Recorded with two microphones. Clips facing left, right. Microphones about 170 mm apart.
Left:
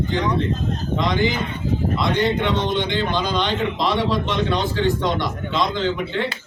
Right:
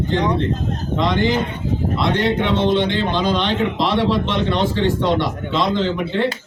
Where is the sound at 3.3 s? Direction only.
Centre (ahead or behind).